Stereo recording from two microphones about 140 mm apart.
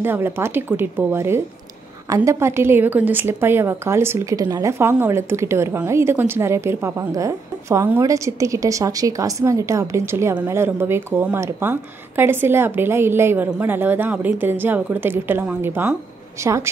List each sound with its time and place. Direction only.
0.0 s a woman's voice: 15° right (ahead or behind)